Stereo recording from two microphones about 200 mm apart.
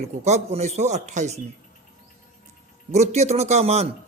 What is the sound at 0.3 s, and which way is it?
Speech, 35° right (ahead or behind).